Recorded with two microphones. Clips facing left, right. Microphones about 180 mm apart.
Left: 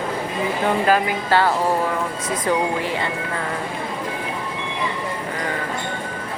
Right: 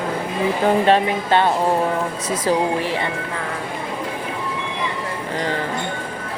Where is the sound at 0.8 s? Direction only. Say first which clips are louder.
Right 2 dB; 25° right (ahead or behind).